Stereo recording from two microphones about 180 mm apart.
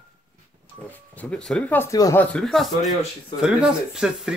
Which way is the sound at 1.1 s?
5° left (ahead or behind).